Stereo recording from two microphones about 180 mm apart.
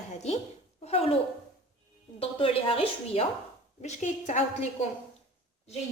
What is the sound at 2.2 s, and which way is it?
A woman's voice, 30° left (ahead or behind).